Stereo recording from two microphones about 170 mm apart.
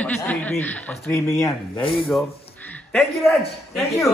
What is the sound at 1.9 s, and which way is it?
Speech, centre (ahead or behind).